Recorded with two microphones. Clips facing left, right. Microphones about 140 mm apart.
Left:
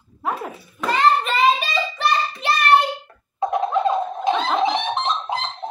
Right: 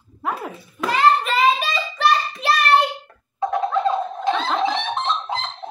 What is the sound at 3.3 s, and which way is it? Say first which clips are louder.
Music: left 1 dB; 15° left (ahead or behind).